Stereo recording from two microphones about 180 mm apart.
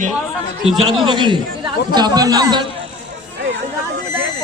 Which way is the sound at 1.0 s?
25° right (ahead or behind).